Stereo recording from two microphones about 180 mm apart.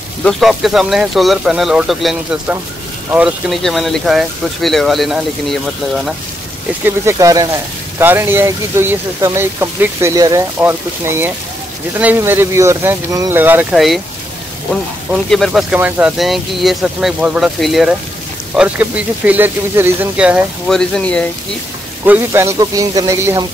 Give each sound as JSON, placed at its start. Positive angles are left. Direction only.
{"t": 0.2, "sound": "speech", "side_deg": 0}
{"t": 6.8, "sound": "speech", "side_deg": -15}
{"t": 15.2, "sound": "speech", "side_deg": 0}
{"t": 22.0, "sound": "speech", "side_deg": -10}